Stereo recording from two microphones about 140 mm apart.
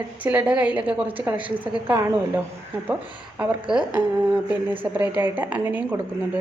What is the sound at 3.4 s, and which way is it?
A woman's voice, 5° right (ahead or behind).